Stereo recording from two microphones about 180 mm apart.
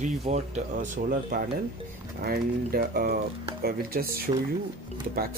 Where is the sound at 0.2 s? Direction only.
40° right (ahead or behind).